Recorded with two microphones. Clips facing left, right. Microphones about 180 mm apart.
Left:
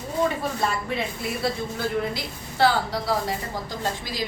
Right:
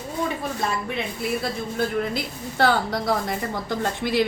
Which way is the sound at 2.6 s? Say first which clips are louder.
Right 1 dB; 60° right (ahead or behind).